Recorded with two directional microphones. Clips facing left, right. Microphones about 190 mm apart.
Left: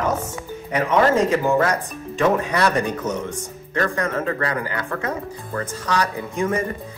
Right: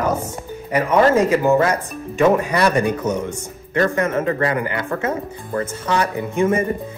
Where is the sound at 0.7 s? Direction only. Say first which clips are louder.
Right 3 dB; 5° right (ahead or behind).